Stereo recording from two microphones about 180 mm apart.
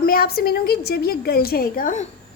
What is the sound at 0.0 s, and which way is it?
A woman's voice, 55° left (ahead or behind).